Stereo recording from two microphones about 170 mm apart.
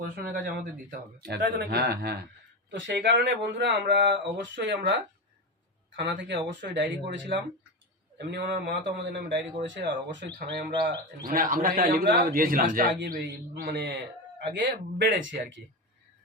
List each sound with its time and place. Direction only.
0.0 s speech: 60° right (ahead or behind)
2.6 s speech: 90° right
6.0 s speech: 90° right
8.2 s a man's voice: 90° right
10.7 s speech: 25° right (ahead or behind)
11.3 s a man's voice: 55° right (ahead or behind)
13.1 s speech: 65° right (ahead or behind)
14.5 s speech: 85° right